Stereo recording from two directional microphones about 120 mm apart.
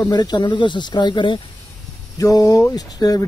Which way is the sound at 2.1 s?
30° left (ahead or behind).